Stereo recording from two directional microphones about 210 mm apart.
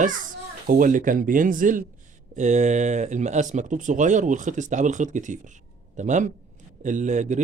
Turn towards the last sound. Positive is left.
turn(degrees=-35)  # may be behind; listen again after turning